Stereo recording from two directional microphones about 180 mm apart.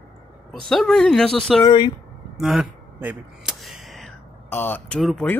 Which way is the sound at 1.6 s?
25° left (ahead or behind).